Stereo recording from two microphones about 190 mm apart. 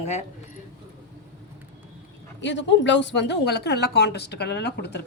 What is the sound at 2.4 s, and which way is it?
Speech, 70° left (ahead or behind).